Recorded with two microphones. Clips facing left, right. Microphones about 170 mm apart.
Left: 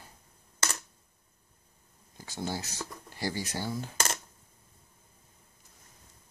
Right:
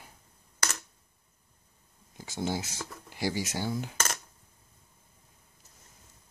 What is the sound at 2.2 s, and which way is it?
Speech, 15° right (ahead or behind).